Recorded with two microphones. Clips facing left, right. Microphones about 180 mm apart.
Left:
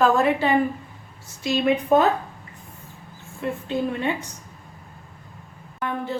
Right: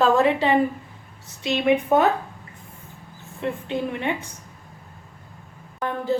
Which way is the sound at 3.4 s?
25° right (ahead or behind).